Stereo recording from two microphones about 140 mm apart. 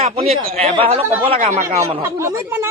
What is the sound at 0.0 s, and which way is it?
A man's voice, 45° right (ahead or behind).